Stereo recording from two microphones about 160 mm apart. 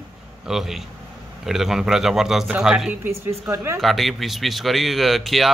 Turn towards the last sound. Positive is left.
turn(degrees=0)  # may be behind; listen again after turning